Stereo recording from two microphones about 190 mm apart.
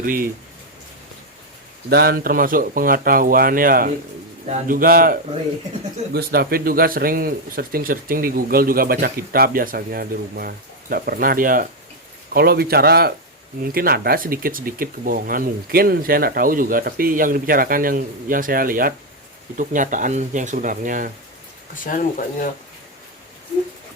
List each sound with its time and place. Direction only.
0.0 s speech: 45° right (ahead or behind)
1.9 s speech: 55° right (ahead or behind)
4.4 s speech: 35° right (ahead or behind)
4.8 s speech: 50° right (ahead or behind)
6.1 s a man's voice: 55° right (ahead or behind)
21.8 s speech: 45° left (ahead or behind)